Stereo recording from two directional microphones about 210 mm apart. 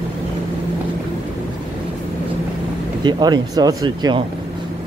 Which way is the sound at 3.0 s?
20° right (ahead or behind).